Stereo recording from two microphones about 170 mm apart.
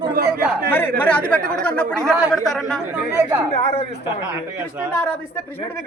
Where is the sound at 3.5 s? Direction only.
40° left (ahead or behind).